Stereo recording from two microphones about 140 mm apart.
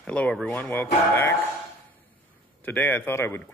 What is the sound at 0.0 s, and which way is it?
Speech, 10° left (ahead or behind).